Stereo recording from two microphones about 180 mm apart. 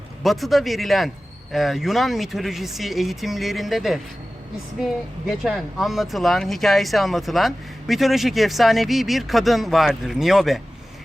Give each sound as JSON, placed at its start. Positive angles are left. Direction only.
{"t": 0.2, "sound": "speech", "side_deg": 0}
{"t": 5.2, "sound": "speech", "side_deg": 0}